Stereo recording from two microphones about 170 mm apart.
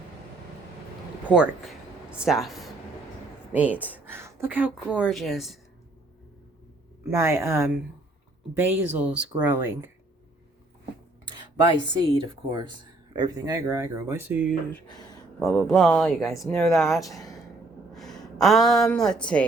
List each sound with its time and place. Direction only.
1.3 s speech: 5° right (ahead or behind)
7.0 s speech: 15° right (ahead or behind)
11.9 s speech: 25° right (ahead or behind); by 16.8 s centre (ahead or behind)
16.8 s speech: 15° left (ahead or behind)
17.9 s speech: centre (ahead or behind)